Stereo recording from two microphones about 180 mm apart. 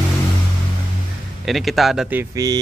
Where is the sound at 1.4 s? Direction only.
Centre (ahead or behind).